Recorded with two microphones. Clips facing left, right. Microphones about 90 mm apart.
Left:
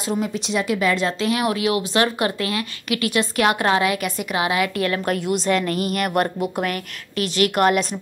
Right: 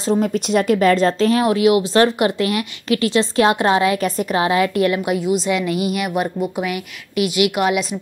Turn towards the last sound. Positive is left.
turn(degrees=-5)  # may be behind; listen again after turning